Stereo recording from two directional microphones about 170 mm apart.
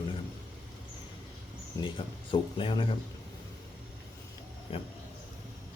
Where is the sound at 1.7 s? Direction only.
30° left (ahead or behind).